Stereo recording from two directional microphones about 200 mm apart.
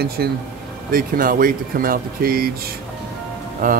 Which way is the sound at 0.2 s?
50° right (ahead or behind).